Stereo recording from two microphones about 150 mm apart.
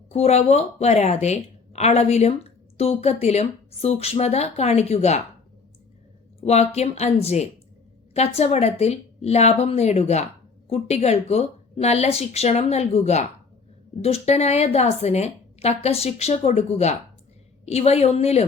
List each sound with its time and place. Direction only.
0.1 s a woman's voice: 45° left (ahead or behind)
6.4 s a woman's voice: 45° left (ahead or behind)